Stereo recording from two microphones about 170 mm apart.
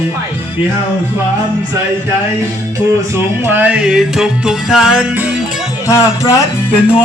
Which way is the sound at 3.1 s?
10° right (ahead or behind).